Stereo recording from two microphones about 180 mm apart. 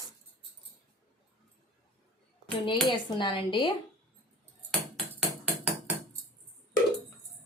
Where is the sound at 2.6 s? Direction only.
25° left (ahead or behind).